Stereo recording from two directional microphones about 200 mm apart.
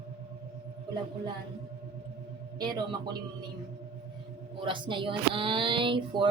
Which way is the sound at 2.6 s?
20° right (ahead or behind).